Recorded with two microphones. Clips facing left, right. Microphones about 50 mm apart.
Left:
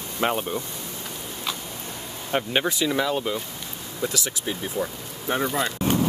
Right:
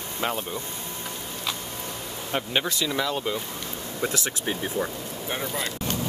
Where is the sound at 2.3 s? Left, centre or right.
Centre.